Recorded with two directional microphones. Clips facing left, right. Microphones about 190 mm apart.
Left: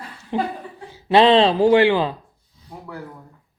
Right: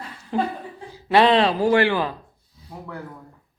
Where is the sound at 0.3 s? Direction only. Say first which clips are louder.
Even; 20° left (ahead or behind).